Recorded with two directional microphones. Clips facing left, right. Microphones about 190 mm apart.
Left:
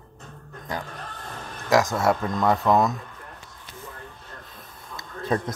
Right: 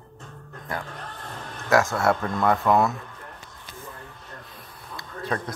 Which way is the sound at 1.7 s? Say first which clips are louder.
Even; 15° left (ahead or behind).